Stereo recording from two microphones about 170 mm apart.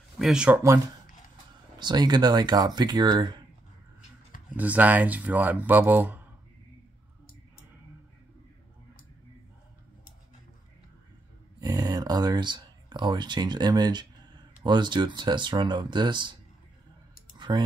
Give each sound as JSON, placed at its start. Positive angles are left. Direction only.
{"t": 0.2, "sound": "speech", "side_deg": -5}
{"t": 1.8, "sound": "speech", "side_deg": -25}
{"t": 4.6, "sound": "speech", "side_deg": -10}
{"t": 11.6, "sound": "speech", "side_deg": -25}
{"t": 17.4, "sound": "a sound", "side_deg": -25}